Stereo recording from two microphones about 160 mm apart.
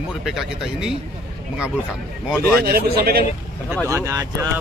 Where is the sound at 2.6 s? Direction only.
75° right (ahead or behind).